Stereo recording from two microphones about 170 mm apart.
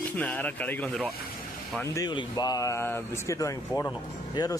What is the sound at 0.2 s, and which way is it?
Speech, 10° left (ahead or behind).